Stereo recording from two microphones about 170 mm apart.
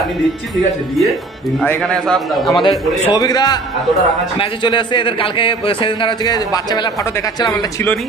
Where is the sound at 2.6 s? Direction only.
25° left (ahead or behind).